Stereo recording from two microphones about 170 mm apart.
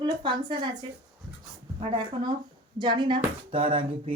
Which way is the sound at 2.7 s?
25° right (ahead or behind).